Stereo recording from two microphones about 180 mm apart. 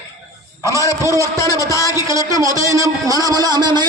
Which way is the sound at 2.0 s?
15° right (ahead or behind).